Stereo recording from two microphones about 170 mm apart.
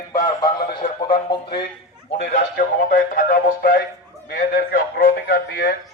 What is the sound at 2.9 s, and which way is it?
A man's voice, 50° left (ahead or behind).